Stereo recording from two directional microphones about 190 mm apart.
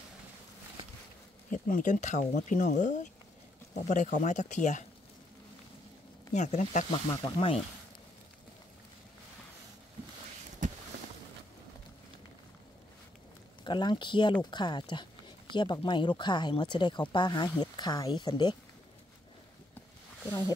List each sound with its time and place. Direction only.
1.5 s speech: 45° left (ahead or behind)
6.3 s speech: 40° left (ahead or behind)
6.9 s speech: 25° left (ahead or behind)
13.7 s speech: 25° left (ahead or behind)